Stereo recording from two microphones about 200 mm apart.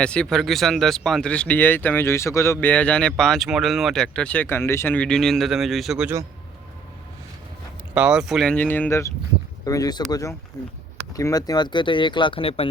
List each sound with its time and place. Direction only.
0.0 s speech: 5° left (ahead or behind)
7.9 s speech: 5° right (ahead or behind); by 12.6 s 30° left (ahead or behind)